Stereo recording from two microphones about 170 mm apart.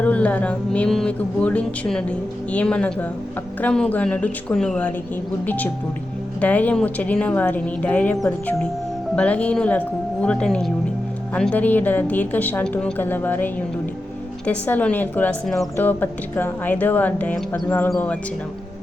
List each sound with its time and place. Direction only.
0.0 s a woman's voice: 10° left (ahead or behind)
6.4 s a woman's voice: 10° left (ahead or behind)
9.1 s a woman's voice: 5° left (ahead or behind)